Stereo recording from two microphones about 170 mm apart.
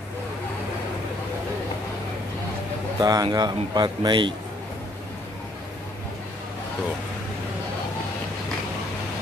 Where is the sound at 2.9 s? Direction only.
20° right (ahead or behind).